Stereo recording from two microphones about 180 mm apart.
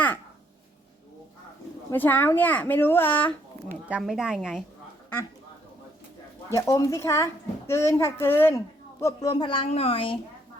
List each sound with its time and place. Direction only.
1.9 s a child's voice: 10° left (ahead or behind)
3.8 s a woman's voice: 5° right (ahead or behind)
6.5 s a child's voice: 15° left (ahead or behind)